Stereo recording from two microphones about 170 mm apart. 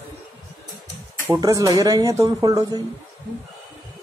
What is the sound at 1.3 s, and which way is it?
Speech, 20° right (ahead or behind).